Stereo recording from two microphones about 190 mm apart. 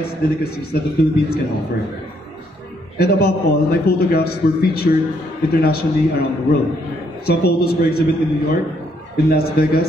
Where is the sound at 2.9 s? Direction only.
55° left (ahead or behind).